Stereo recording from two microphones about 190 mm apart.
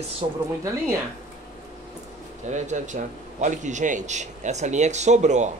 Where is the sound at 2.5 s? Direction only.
40° right (ahead or behind).